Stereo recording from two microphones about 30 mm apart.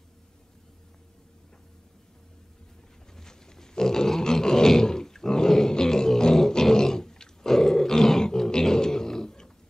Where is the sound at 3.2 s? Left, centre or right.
Centre.